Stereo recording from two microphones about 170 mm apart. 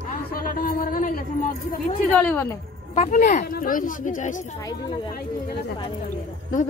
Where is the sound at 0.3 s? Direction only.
55° left (ahead or behind).